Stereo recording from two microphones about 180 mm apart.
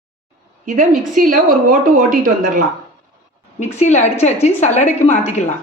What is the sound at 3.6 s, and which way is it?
A woman's voice, 40° left (ahead or behind).